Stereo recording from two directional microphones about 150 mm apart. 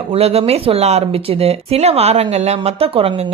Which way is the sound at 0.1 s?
45° right (ahead or behind).